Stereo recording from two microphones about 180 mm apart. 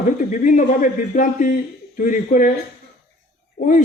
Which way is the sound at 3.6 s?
65° left (ahead or behind).